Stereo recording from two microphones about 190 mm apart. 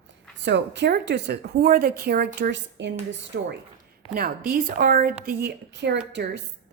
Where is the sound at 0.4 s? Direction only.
65° right (ahead or behind).